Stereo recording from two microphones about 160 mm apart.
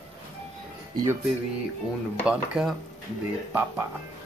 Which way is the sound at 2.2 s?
5° right (ahead or behind).